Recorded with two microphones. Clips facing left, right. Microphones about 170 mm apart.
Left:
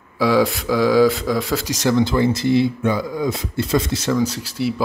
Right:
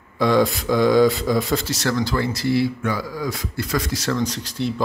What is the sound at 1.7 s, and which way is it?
Speech, 15° left (ahead or behind).